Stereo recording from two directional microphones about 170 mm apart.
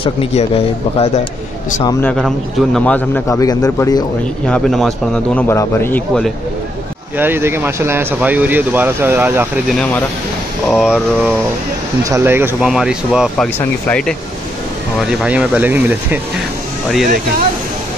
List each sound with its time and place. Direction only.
0.0 s speech: 35° left (ahead or behind)
1.9 s a man's voice: 15° left (ahead or behind)
2.1 s a man's voice: centre (ahead or behind)
3.3 s a man's voice: 20° left (ahead or behind)
4.5 s a man's voice: 5° left (ahead or behind)
7.2 s speech: 10° right (ahead or behind)
10.7 s a man's voice: 5° right (ahead or behind)
12.0 s a man's voice: 15° right (ahead or behind)
13.6 s a man's voice: 5° left (ahead or behind)
15.0 s speech: 5° right (ahead or behind)